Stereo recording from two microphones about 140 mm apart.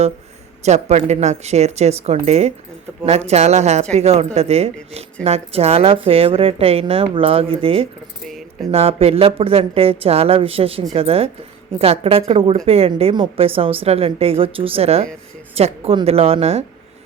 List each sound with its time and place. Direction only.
0.6 s a woman's voice: 55° right (ahead or behind)